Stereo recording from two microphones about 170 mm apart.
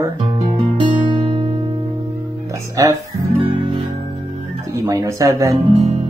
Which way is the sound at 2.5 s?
20° right (ahead or behind).